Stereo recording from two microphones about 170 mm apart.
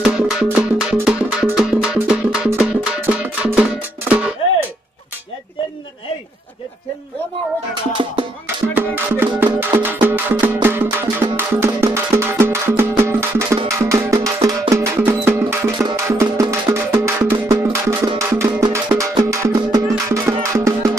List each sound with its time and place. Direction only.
0.3 s music: 5° right (ahead or behind)
8.0 s music: 30° right (ahead or behind)
8.7 s music: 10° right (ahead or behind)